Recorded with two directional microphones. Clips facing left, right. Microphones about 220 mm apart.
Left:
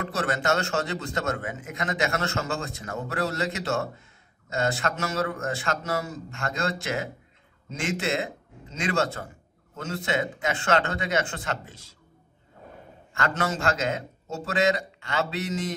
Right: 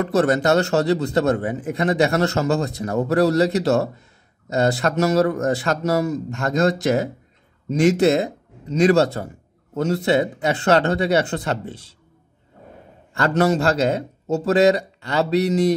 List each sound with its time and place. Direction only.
0.1 s a man's voice: 40° right (ahead or behind)
13.1 s a man's voice: 35° right (ahead or behind)